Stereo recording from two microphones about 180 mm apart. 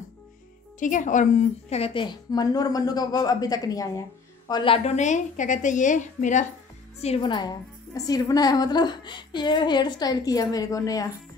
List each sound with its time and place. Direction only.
0.7 s a woman's voice: 45° left (ahead or behind)
7.0 s a woman's voice: 30° left (ahead or behind)